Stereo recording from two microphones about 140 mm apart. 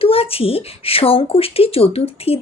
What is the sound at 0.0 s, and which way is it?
Speech, 45° left (ahead or behind).